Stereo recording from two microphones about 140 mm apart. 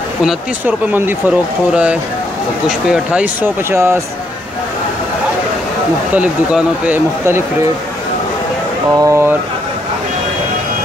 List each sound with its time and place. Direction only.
0.2 s speech: 5° right (ahead or behind)
6.1 s speech: 10° right (ahead or behind)
8.9 s speech: 20° right (ahead or behind)